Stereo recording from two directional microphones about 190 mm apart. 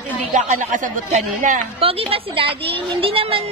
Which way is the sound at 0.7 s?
40° right (ahead or behind).